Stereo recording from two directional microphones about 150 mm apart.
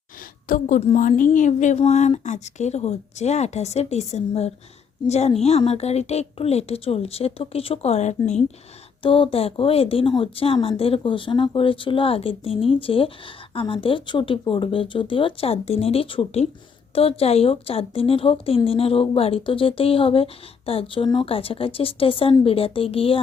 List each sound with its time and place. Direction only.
0.4 s a woman's voice: 70° left (ahead or behind)
0.8 s speech: 45° left (ahead or behind)
1.0 s speech: 60° left (ahead or behind)
9.0 s speech: 35° left (ahead or behind)